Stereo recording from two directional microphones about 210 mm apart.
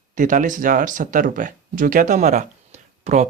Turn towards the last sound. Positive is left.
turn(degrees=-30)  # may be behind; listen again after turning